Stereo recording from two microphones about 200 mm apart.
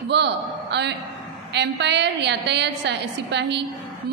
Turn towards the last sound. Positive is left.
turn(degrees=-60)  # may be behind; listen again after turning